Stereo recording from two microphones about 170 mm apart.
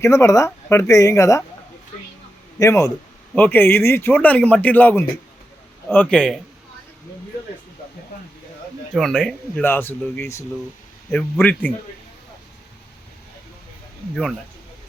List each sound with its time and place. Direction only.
0.0 s speech: 15° left (ahead or behind)
2.6 s a man's voice: 20° left (ahead or behind)
9.0 s speech: 5° left (ahead or behind)